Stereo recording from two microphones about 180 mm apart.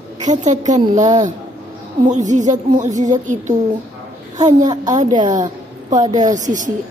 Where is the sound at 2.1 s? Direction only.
45° right (ahead or behind).